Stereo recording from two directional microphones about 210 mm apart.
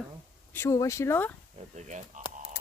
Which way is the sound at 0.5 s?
15° left (ahead or behind).